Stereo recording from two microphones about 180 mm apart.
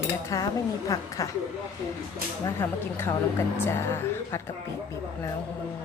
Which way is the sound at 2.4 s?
15° left (ahead or behind).